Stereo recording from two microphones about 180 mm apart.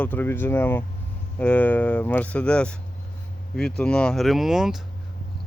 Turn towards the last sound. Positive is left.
turn(degrees=0)  # may be behind; listen again after turning